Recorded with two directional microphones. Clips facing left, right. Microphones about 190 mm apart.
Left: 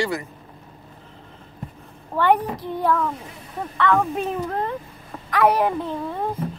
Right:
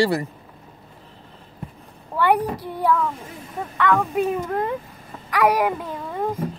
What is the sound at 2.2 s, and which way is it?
Child singing, 10° right (ahead or behind).